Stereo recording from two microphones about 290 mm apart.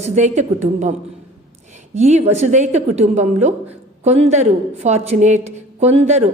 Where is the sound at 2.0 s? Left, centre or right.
Right.